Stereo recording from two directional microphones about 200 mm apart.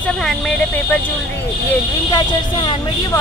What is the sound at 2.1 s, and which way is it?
Speech, 25° left (ahead or behind).